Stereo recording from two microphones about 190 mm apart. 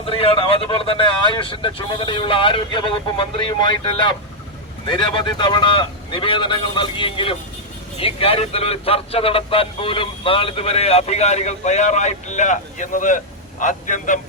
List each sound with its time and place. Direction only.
0.0 s speech: 30° left (ahead or behind)